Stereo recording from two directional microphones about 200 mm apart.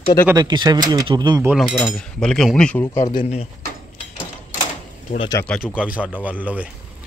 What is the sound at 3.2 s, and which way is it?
Speech, 30° left (ahead or behind).